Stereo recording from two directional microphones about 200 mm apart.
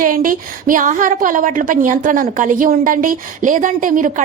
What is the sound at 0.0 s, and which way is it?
A woman's voice, 45° right (ahead or behind).